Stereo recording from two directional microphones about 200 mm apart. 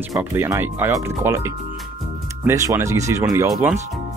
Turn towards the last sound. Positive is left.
turn(degrees=-15)  # may be behind; listen again after turning